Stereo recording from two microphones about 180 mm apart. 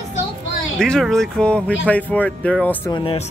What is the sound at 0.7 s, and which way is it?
Speech, 5° left (ahead or behind).